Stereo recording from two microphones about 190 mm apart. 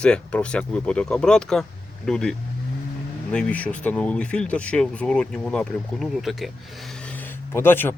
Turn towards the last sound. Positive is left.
turn(degrees=10)  # may be behind; listen again after turning